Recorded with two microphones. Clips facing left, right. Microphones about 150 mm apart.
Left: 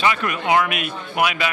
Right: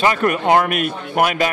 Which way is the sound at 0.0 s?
40° right (ahead or behind).